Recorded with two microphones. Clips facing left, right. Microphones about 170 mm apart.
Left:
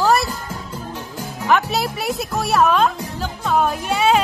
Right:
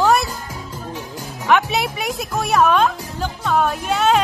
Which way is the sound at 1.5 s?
Centre (ahead or behind).